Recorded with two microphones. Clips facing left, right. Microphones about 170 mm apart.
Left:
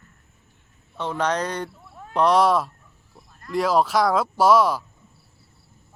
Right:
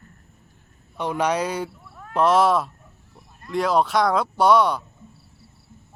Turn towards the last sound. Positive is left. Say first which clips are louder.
# even
turn(degrees=0)  # may be behind; listen again after turning